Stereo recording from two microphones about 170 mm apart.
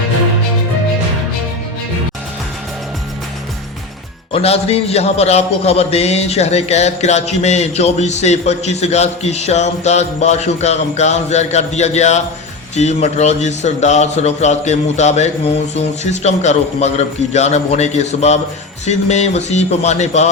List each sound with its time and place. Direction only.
4.3 s a man's voice: 35° left (ahead or behind)